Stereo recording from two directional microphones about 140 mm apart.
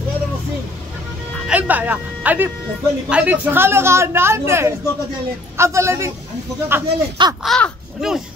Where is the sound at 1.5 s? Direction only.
10° right (ahead or behind).